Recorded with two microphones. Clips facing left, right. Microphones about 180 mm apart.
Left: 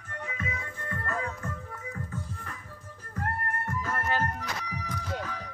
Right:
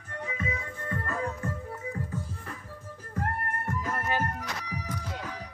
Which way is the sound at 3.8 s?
15° right (ahead or behind).